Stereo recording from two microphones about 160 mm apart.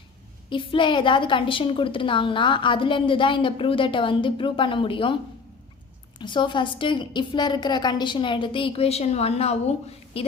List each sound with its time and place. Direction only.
0.5 s a woman's voice: 30° left (ahead or behind)
6.1 s a woman's voice: 30° left (ahead or behind)